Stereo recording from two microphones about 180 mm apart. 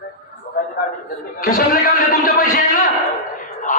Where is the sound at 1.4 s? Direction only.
55° left (ahead or behind).